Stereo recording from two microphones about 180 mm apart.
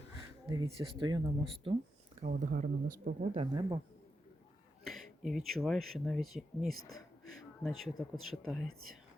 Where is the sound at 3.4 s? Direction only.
25° right (ahead or behind).